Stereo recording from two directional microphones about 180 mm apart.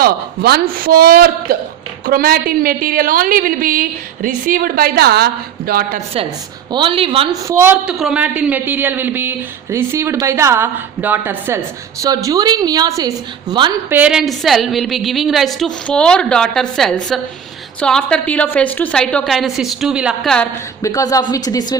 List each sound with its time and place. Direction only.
0.0 s a woman's voice: 60° right (ahead or behind)
6.7 s speech: 25° right (ahead or behind)
7.4 s a woman's voice: 15° right (ahead or behind)
13.9 s a woman's voice: 5° right (ahead or behind)
20.8 s a woman's voice: 20° left (ahead or behind)